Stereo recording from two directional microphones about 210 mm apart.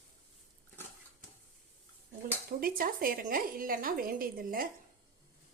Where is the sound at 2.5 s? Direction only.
45° right (ahead or behind).